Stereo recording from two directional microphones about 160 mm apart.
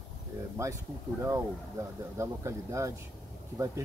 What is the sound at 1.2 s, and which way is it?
Speech, 15° right (ahead or behind).